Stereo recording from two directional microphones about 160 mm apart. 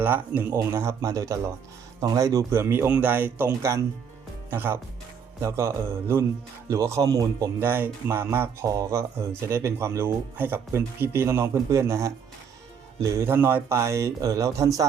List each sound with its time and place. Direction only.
0.0 s speech: 10° right (ahead or behind)